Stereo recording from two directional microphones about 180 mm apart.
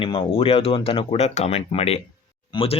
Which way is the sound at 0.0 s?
30° left (ahead or behind).